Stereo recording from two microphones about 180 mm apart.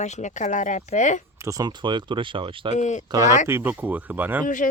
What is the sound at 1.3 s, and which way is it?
Speech, 15° right (ahead or behind).